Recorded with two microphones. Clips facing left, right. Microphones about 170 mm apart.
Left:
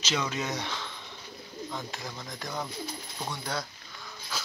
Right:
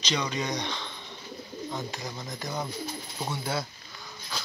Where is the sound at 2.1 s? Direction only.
Centre (ahead or behind).